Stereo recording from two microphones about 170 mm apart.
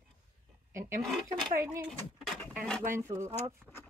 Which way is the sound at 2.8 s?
15° right (ahead or behind).